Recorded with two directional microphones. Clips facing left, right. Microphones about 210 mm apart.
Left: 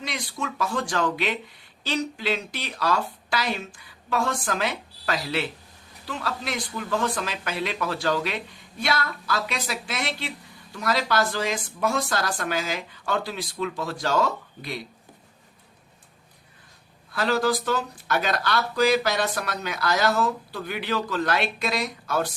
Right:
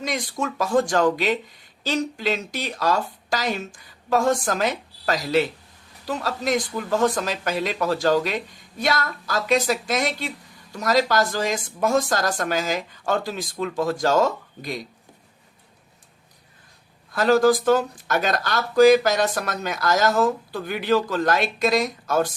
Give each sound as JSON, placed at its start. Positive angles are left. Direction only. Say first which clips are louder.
{"t": 0.0, "sound": "speech", "louder": "right 5 dB", "side_deg": -45}
{"t": 17.1, "sound": "speech", "louder": "right 6 dB", "side_deg": -45}